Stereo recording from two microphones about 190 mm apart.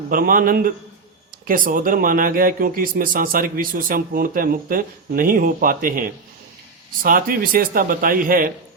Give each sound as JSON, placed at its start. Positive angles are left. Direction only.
{"t": 0.1, "sound": "speech", "side_deg": -45}